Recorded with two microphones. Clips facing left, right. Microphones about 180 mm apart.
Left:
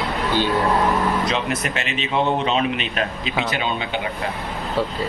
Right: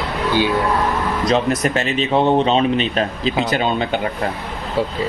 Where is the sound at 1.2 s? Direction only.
40° right (ahead or behind).